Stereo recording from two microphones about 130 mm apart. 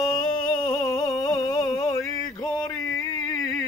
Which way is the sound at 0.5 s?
35° left (ahead or behind).